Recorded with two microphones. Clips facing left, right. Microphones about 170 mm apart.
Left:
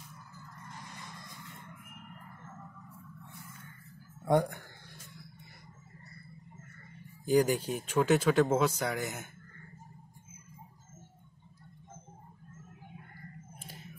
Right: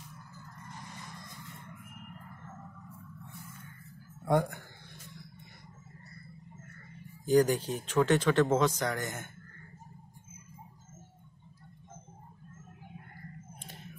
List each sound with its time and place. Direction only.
4.2 s speech: 15° left (ahead or behind)
7.2 s speech: 10° left (ahead or behind)